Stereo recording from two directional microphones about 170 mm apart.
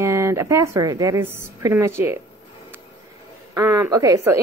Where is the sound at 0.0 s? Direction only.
15° right (ahead or behind).